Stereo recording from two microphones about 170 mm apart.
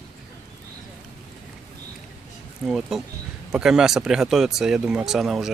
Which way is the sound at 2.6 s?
Centre (ahead or behind).